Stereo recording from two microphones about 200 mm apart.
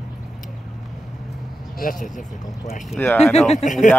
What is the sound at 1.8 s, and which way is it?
Speech, 45° left (ahead or behind).